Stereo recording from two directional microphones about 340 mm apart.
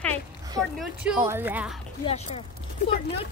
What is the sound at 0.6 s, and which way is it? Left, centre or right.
A woman's voice, centre.